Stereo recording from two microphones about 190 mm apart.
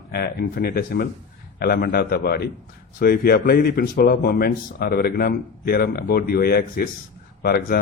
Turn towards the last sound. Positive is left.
turn(degrees=55)  # may be behind; listen again after turning